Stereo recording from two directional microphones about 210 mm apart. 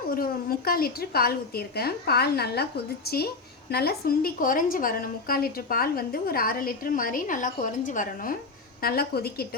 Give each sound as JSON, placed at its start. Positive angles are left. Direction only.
{"t": 0.1, "sound": "a woman's voice", "side_deg": 45}